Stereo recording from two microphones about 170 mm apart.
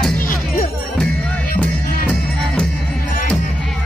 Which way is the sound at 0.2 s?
55° left (ahead or behind).